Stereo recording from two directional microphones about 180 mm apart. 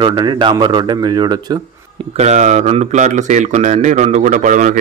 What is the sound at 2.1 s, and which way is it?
Speech, 40° right (ahead or behind).